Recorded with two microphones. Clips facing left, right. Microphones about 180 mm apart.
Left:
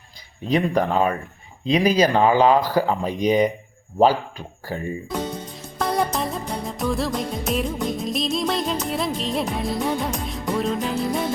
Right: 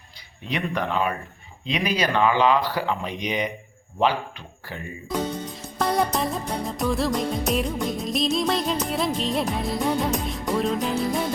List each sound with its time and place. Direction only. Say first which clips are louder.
0.4 s speech: left 7 dB; 40° left (ahead or behind)
5.5 s music: even; centre (ahead or behind)